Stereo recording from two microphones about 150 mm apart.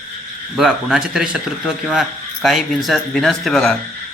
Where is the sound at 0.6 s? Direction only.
Centre (ahead or behind).